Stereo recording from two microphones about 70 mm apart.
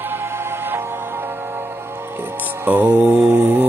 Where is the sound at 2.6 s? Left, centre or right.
Right.